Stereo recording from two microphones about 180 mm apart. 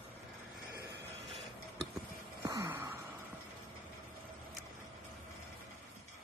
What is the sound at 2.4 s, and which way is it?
Gasp, 15° right (ahead or behind).